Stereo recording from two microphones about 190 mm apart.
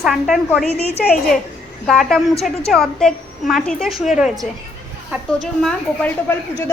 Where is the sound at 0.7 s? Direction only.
35° left (ahead or behind).